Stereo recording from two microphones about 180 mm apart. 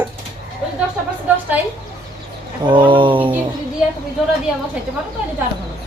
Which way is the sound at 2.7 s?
25° right (ahead or behind).